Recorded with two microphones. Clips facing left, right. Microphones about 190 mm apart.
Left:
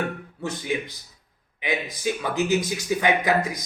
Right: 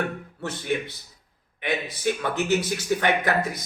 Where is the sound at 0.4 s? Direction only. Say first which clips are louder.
Even; 15° left (ahead or behind).